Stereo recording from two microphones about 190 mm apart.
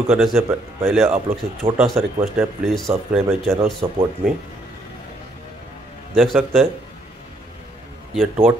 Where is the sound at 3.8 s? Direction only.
10° right (ahead or behind).